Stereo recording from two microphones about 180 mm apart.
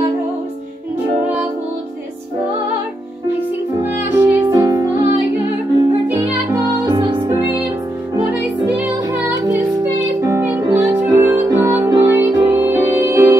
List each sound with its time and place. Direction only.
3.8 s music: 10° right (ahead or behind)
6.5 s music: 15° right (ahead or behind)
8.3 s music: 10° right (ahead or behind)
10.2 s music: 15° right (ahead or behind)